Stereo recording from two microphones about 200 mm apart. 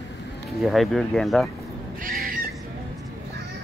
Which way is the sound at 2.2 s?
45° right (ahead or behind).